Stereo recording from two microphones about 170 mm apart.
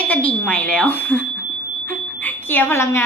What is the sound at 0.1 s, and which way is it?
A woman's voice, 10° left (ahead or behind).